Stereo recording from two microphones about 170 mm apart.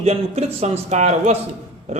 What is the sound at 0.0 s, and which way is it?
A man's voice, 40° right (ahead or behind).